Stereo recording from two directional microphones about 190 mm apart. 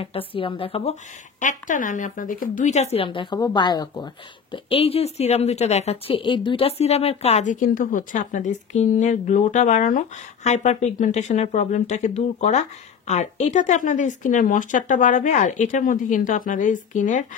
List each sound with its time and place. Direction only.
0.3 s a woman's voice: 25° left (ahead or behind)
1.4 s speech: 45° left (ahead or behind)